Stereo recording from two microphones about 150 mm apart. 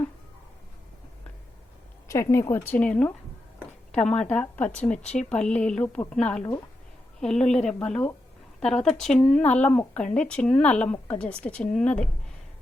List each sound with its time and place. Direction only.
2.0 s speech: 20° left (ahead or behind)